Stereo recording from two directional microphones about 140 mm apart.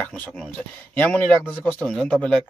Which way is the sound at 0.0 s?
10° left (ahead or behind).